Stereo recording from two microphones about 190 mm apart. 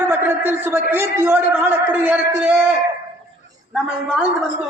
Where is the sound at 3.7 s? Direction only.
5° right (ahead or behind).